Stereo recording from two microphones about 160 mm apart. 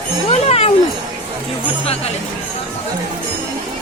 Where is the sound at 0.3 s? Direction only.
40° left (ahead or behind).